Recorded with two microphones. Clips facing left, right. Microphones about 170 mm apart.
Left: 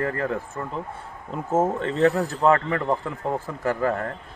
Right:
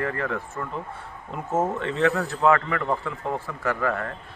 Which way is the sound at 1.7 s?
35° left (ahead or behind).